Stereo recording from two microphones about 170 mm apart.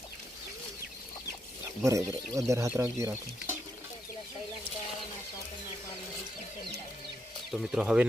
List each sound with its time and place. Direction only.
1.8 s speech: 20° right (ahead or behind)
7.5 s speech: centre (ahead or behind)